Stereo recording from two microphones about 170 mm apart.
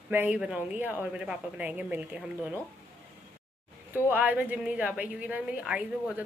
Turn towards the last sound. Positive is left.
turn(degrees=-5)  # may be behind; listen again after turning